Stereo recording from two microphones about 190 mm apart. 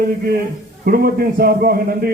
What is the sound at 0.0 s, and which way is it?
A man's voice, 50° right (ahead or behind).